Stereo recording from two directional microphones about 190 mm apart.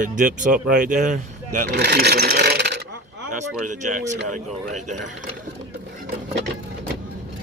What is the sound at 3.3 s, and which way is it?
Speech, 40° right (ahead or behind).